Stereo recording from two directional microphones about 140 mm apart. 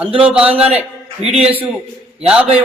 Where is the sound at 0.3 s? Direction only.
10° right (ahead or behind).